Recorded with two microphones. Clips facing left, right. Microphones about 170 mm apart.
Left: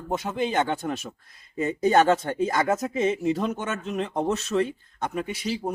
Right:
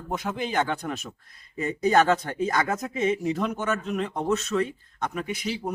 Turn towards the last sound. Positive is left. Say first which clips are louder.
# left 1 dB
turn(degrees=30)  # may be behind; listen again after turning